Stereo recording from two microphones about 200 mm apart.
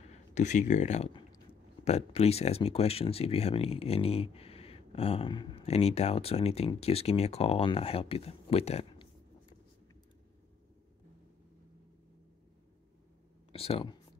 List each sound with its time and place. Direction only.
0.3 s speech: 35° left (ahead or behind)
1.1 s speech: 25° left (ahead or behind)
13.5 s speech: 30° left (ahead or behind)